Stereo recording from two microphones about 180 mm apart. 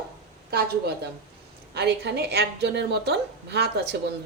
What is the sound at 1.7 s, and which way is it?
A woman's voice, 70° right (ahead or behind).